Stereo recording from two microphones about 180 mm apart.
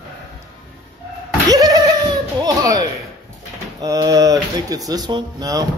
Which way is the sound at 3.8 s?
20° right (ahead or behind).